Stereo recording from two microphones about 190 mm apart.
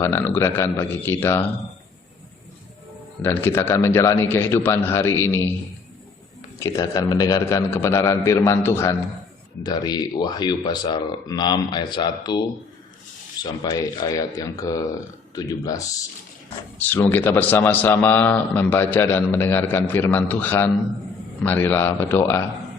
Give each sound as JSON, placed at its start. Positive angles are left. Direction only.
{"t": 0.0, "sound": "a man's voice", "side_deg": 10}
{"t": 3.2, "sound": "a man's voice", "side_deg": 10}
{"t": 6.6, "sound": "a man's voice", "side_deg": 15}
{"t": 13.4, "sound": "a man's voice", "side_deg": 20}